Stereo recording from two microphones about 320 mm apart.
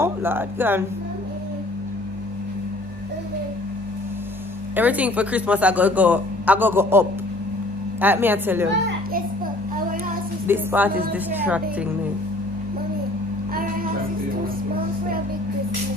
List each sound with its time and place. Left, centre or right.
0.0 s speech: centre
4.7 s a woman's voice: centre
8.6 s children playing: right
10.4 s a woman's voice: centre